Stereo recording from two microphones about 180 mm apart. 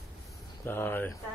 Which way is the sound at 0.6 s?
10° left (ahead or behind).